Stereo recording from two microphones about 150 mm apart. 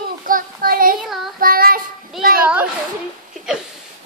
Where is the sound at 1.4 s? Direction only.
75° right (ahead or behind).